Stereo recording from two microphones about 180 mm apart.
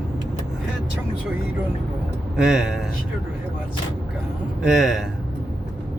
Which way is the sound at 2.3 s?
5° right (ahead or behind).